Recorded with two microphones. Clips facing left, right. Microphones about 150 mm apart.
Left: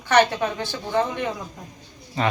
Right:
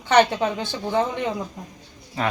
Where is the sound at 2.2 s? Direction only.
5° right (ahead or behind).